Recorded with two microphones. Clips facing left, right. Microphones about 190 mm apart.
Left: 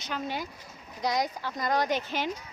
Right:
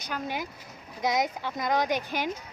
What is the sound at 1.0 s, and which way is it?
A woman's voice, 20° right (ahead or behind).